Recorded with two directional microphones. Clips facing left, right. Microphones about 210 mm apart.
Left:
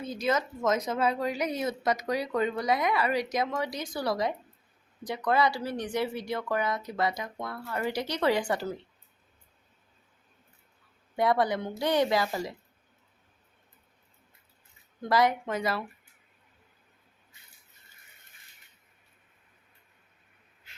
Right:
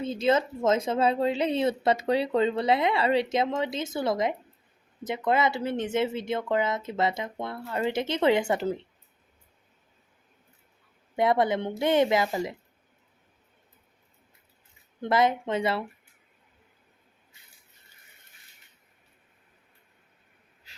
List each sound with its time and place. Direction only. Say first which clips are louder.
0.0 s speech: right 5 dB; 25° right (ahead or behind)
11.2 s speech: right 2 dB; 20° right (ahead or behind)
15.0 s speech: right 1 dB; 25° right (ahead or behind)